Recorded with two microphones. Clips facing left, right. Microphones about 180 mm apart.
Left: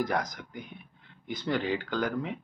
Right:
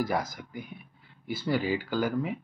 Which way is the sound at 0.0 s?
5° right (ahead or behind).